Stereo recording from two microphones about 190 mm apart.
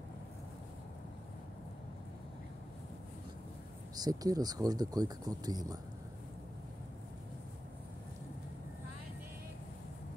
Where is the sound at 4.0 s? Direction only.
20° right (ahead or behind).